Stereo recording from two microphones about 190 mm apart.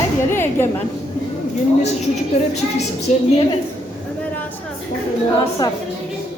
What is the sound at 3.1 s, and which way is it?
Speech, 40° left (ahead or behind).